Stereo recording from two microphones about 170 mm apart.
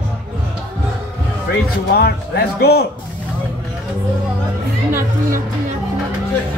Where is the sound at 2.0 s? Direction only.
70° left (ahead or behind).